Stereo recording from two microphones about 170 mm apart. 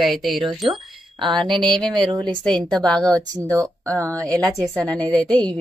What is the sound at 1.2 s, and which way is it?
Speech, 25° right (ahead or behind).